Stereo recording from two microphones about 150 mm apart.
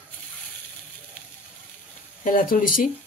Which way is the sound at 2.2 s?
65° left (ahead or behind).